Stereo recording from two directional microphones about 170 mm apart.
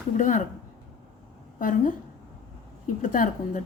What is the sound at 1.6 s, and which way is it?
Speech, 50° left (ahead or behind).